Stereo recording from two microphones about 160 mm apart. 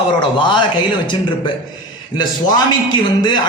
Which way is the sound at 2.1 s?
25° left (ahead or behind).